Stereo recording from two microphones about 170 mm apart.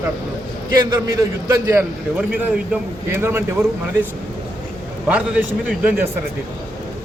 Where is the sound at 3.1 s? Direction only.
15° right (ahead or behind).